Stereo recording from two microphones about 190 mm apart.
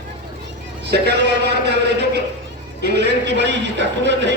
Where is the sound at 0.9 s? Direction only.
60° right (ahead or behind).